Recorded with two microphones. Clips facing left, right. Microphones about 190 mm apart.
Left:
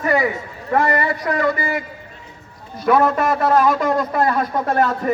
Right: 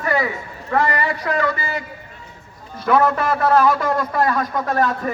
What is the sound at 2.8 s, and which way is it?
A man's voice, 20° left (ahead or behind).